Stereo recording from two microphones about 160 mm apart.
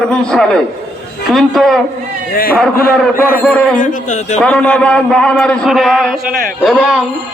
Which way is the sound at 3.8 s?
50° left (ahead or behind).